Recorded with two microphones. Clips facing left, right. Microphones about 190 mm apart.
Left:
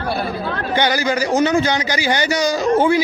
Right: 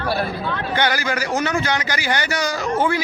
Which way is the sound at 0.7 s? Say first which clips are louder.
Left 4 dB; 20° left (ahead or behind).